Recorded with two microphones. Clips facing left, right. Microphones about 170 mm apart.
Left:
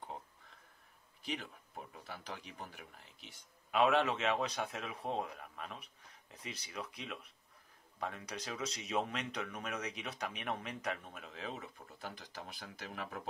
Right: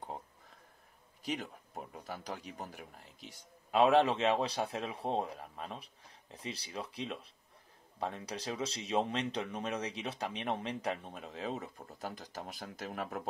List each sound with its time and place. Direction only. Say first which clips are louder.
1.3 s speech: right 4 dB; 40° right (ahead or behind)